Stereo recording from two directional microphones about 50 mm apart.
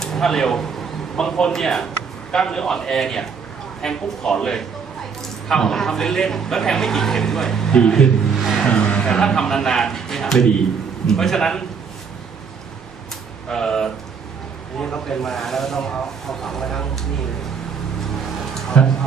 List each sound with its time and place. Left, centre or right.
0.0 s a man's voice: centre
7.7 s a man's voice: centre
13.5 s a man's voice: centre
18.8 s speech: left